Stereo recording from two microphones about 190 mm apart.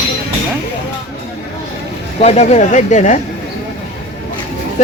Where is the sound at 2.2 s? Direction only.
35° left (ahead or behind).